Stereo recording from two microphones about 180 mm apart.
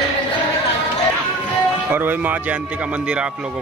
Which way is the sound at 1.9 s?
10° right (ahead or behind).